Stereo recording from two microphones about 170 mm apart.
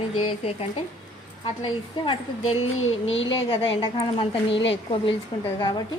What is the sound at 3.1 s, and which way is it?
Speech, 90° left.